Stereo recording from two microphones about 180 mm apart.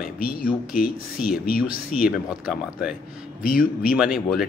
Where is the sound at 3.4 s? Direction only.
50° left (ahead or behind).